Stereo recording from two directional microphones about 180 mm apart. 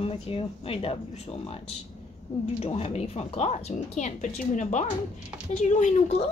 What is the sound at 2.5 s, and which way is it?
Speech, 35° left (ahead or behind).